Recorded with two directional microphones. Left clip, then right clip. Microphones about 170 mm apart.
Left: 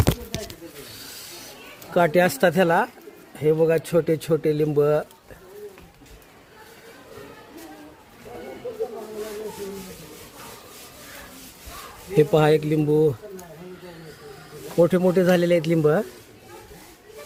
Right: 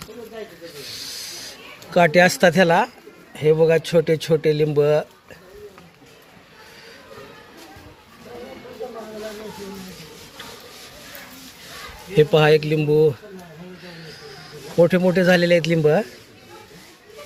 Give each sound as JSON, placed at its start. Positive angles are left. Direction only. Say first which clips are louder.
{"t": 0.9, "sound": "snake", "louder": "right 7 dB", "side_deg": 10}
{"t": 1.9, "sound": "speech", "louder": "right 4 dB", "side_deg": 5}
{"t": 12.1, "sound": "speech", "louder": "right 3 dB", "side_deg": 15}
{"t": 13.8, "sound": "a sound", "louder": "right 3 dB", "side_deg": 15}